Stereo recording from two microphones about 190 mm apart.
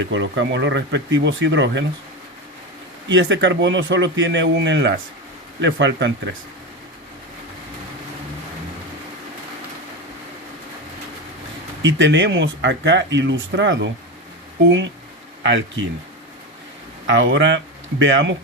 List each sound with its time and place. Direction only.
0.0 s speech: 75° right (ahead or behind)
3.1 s speech: 70° right (ahead or behind)
11.8 s speech: 75° right (ahead or behind)
15.4 s speech: 70° right (ahead or behind)
17.1 s speech: 75° right (ahead or behind)